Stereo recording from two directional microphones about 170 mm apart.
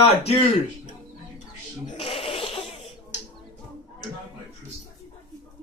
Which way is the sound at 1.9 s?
30° left (ahead or behind).